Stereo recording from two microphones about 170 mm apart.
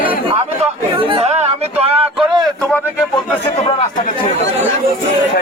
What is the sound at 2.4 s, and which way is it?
Speech, 5° left (ahead or behind).